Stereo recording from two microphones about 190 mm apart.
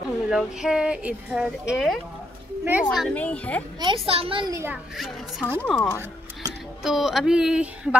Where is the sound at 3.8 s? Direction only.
30° right (ahead or behind).